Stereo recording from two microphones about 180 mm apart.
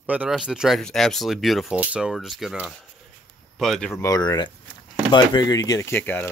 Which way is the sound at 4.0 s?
20° left (ahead or behind).